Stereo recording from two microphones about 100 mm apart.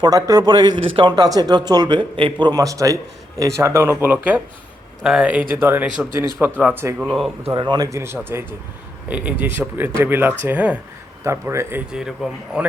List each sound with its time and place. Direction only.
0.0 s a man's voice: 40° right (ahead or behind)
0.8 s speech: 65° right (ahead or behind)
1.1 s a man's voice: 40° right (ahead or behind)
2.5 s speech: 35° right (ahead or behind); by 7.3 s 5° right (ahead or behind)
7.5 s a man's voice: 45° right (ahead or behind)
7.9 s speech: 25° right (ahead or behind)
11.2 s speech: 30° right (ahead or behind)
11.9 s speech: 5° right (ahead or behind)